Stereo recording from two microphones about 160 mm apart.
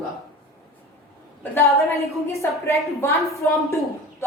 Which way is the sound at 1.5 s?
20° left (ahead or behind).